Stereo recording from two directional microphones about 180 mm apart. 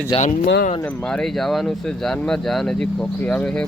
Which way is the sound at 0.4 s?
70° left (ahead or behind).